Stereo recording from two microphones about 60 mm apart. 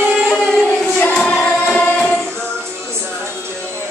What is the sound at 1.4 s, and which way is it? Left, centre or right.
Music, left.